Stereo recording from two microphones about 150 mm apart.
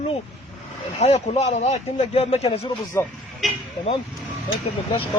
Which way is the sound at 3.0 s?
15° left (ahead or behind).